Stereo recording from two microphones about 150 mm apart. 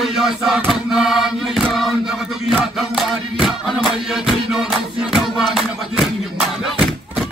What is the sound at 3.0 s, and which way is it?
Music, centre (ahead or behind).